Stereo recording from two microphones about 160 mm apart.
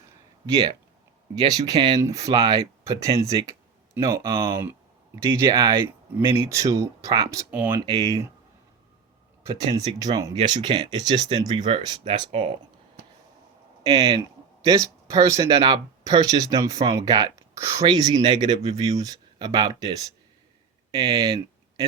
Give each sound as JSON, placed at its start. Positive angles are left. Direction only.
{"t": 1.5, "sound": "speech", "side_deg": -25}
{"t": 9.7, "sound": "speech", "side_deg": -25}
{"t": 13.8, "sound": "speech", "side_deg": -25}
{"t": 20.9, "sound": "speech", "side_deg": -25}